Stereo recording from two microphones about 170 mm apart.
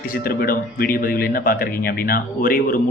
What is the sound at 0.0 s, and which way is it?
Speech, 60° left (ahead or behind).